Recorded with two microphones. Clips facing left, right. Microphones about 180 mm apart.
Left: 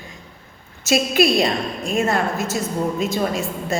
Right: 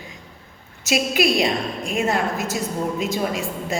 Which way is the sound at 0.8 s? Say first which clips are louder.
Left 3 dB; 15° right (ahead or behind).